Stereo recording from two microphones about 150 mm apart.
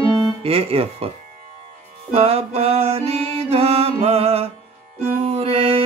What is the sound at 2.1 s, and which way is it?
Music, 40° right (ahead or behind).